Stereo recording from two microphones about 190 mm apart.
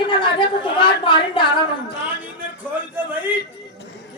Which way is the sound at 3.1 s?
10° right (ahead or behind).